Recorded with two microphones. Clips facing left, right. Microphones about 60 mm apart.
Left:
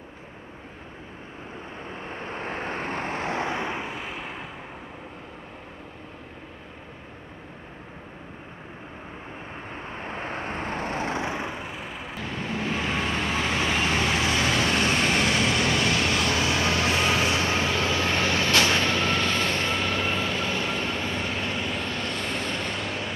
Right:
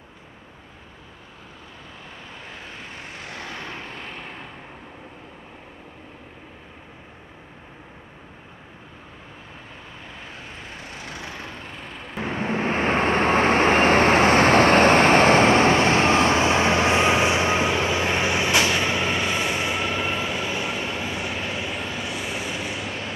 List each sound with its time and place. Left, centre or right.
2.0 s vehicle: left; by 4.5 s centre
9.9 s vehicle: left; by 12.2 s centre
12.2 s vehicle: right; by 23.1 s centre